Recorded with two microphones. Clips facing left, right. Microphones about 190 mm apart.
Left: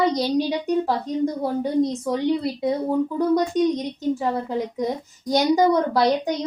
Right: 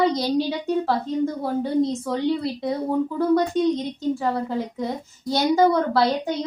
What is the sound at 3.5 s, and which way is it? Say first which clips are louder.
A woman's voice: even; 15° left (ahead or behind).